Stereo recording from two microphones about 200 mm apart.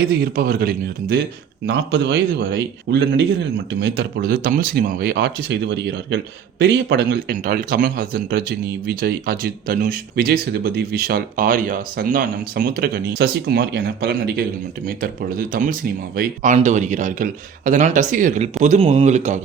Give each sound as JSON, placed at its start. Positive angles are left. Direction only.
{"t": 0.0, "sound": "a man's voice", "side_deg": -55}